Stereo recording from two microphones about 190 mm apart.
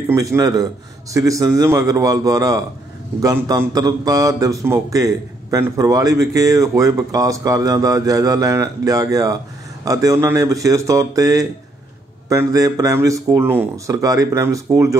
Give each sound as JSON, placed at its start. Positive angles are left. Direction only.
{"t": 0.1, "sound": "a man's voice", "side_deg": -15}